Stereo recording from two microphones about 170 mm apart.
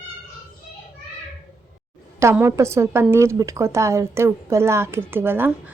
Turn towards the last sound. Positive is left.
turn(degrees=-10)  # may be behind; listen again after turning